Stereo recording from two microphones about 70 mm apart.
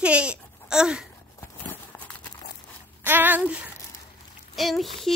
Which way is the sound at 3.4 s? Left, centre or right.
Centre.